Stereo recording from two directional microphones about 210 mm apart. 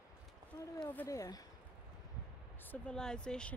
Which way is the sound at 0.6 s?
20° left (ahead or behind).